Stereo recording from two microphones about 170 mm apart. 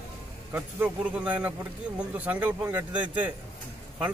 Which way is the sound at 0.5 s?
10° right (ahead or behind).